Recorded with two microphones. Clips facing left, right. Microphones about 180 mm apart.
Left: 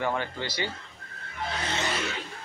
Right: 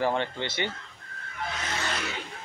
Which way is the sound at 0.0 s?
30° right (ahead or behind).